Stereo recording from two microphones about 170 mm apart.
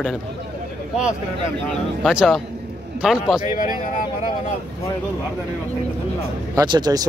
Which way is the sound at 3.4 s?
50° left (ahead or behind).